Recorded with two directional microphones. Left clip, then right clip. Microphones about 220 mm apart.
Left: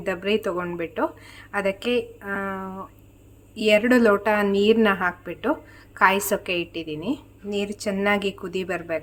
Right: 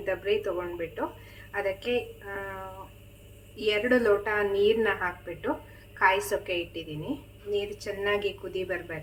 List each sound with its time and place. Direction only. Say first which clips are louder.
0.0 s a woman's voice: left 4 dB; 50° left (ahead or behind)